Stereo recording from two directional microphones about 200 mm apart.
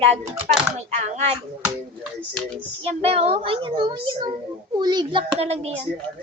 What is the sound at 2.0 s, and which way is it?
Speech, 5° left (ahead or behind).